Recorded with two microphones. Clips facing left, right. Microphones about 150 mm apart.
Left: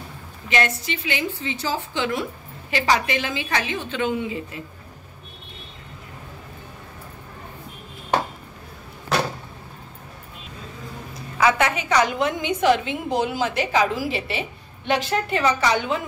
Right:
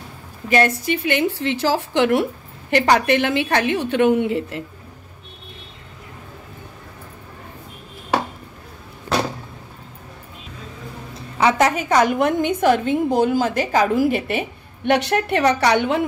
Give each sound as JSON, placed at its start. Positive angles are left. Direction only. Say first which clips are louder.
{"t": 0.5, "sound": "a woman's voice", "louder": "right 6 dB", "side_deg": -50}
{"t": 11.1, "sound": "a woman's voice", "louder": "right 3 dB", "side_deg": -30}
{"t": 14.9, "sound": "a woman's voice", "louder": "right 4 dB", "side_deg": -65}